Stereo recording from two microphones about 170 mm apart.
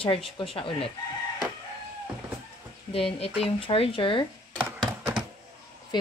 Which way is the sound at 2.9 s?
35° left (ahead or behind).